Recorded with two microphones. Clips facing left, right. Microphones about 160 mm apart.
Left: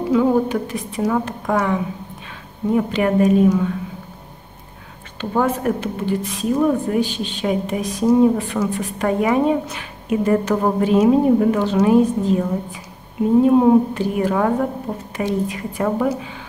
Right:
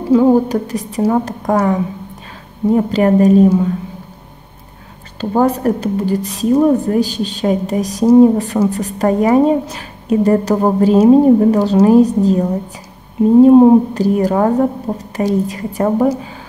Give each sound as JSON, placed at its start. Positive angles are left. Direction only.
{"t": 0.1, "sound": "a woman's voice", "side_deg": -35}
{"t": 5.2, "sound": "a woman's voice", "side_deg": -35}